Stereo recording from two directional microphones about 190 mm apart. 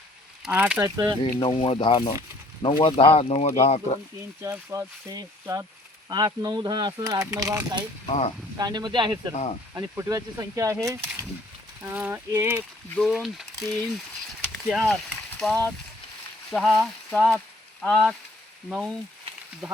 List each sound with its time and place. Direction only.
0.4 s speech: 5° right (ahead or behind)
1.2 s speech: 25° left (ahead or behind)
4.4 s speech: 15° right (ahead or behind)
8.0 s speech: 30° left (ahead or behind)
8.5 s speech: 20° right (ahead or behind)
9.3 s speech: 35° left (ahead or behind)
9.7 s speech: 15° right (ahead or behind); by 14.0 s centre (ahead or behind)
14.4 s a sound: 5° left (ahead or behind)
15.3 s speech: 5° left (ahead or behind)
16.6 s a sound: centre (ahead or behind)